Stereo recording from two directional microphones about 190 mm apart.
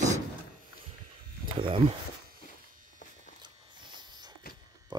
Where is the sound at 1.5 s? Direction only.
25° right (ahead or behind).